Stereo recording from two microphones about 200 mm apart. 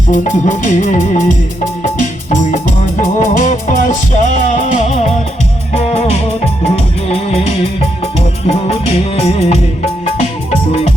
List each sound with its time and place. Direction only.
0.1 s music: 40° left (ahead or behind)